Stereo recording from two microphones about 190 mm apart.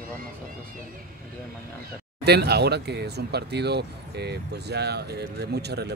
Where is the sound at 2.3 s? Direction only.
60° right (ahead or behind).